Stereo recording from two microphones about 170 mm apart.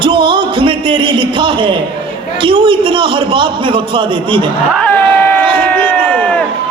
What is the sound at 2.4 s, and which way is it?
Speech, 30° right (ahead or behind).